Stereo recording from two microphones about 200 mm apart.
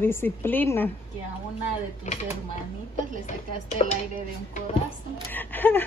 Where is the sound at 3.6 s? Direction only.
35° left (ahead or behind).